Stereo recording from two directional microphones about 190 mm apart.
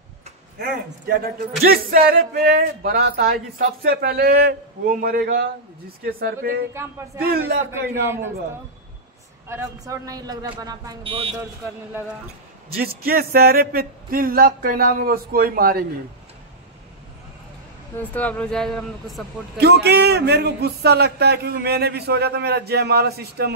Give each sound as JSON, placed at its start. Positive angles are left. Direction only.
{"t": 0.6, "sound": "speech", "side_deg": -55}
{"t": 7.7, "sound": "a man's voice", "side_deg": -15}
{"t": 9.5, "sound": "speech", "side_deg": -15}
{"t": 12.7, "sound": "speech", "side_deg": -50}
{"t": 17.9, "sound": "speech", "side_deg": 10}
{"t": 19.6, "sound": "speech", "side_deg": -60}